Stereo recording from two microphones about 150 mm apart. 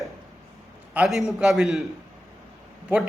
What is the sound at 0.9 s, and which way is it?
Speech, centre (ahead or behind).